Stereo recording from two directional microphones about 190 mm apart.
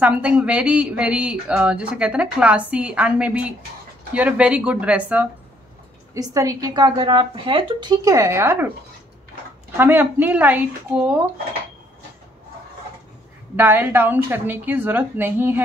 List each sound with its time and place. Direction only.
0.0 s a woman's voice: 5° right (ahead or behind)
6.1 s a woman's voice: 20° right (ahead or behind)
9.8 s a woman's voice: 10° right (ahead or behind)
13.6 s a woman's voice: 10° right (ahead or behind)